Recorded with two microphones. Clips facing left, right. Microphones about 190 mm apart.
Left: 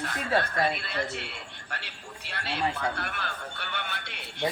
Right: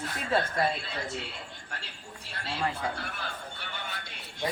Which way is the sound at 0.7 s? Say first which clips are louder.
Left 3 dB; 70° left (ahead or behind).